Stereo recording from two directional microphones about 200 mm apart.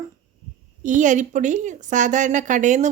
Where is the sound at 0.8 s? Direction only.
40° right (ahead or behind).